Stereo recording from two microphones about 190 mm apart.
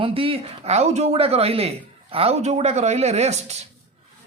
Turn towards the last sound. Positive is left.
turn(degrees=-35)  # may be behind; listen again after turning